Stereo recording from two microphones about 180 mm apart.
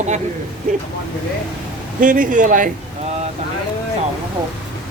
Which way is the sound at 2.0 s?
50° right (ahead or behind).